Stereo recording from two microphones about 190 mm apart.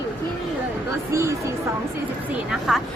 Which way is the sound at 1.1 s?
15° right (ahead or behind).